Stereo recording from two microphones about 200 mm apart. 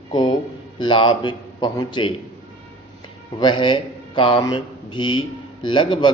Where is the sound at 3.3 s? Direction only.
25° left (ahead or behind).